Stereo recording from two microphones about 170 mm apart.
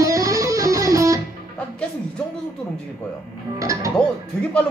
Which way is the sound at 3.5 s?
20° right (ahead or behind).